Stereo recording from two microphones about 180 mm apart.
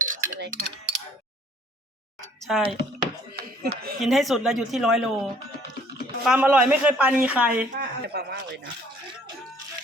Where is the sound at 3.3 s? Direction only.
60° right (ahead or behind).